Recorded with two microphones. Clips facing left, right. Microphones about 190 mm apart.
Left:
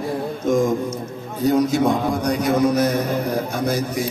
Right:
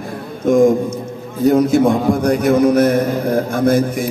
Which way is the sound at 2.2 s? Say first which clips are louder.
Right 5 dB; 55° right (ahead or behind).